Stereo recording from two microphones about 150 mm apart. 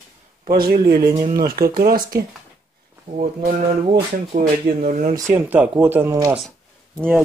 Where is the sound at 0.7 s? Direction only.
90° right.